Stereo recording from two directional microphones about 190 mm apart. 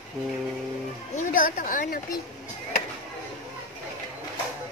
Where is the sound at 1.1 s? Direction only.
45° left (ahead or behind).